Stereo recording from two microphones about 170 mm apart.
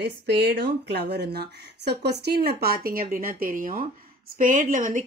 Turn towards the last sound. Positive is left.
turn(degrees=-50)  # may be behind; listen again after turning